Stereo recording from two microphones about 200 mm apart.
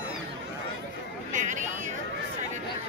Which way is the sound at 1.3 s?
40° right (ahead or behind).